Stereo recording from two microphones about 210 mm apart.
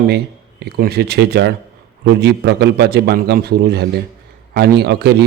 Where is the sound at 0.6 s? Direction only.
50° right (ahead or behind).